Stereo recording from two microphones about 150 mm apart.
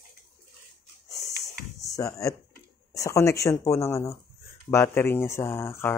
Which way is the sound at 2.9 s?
20° left (ahead or behind).